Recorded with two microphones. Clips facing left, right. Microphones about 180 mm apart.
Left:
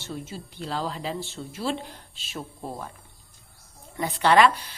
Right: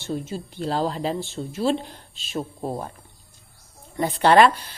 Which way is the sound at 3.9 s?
35° right (ahead or behind).